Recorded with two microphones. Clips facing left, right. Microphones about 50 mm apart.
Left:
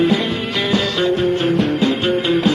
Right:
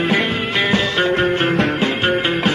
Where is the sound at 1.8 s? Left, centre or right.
Right.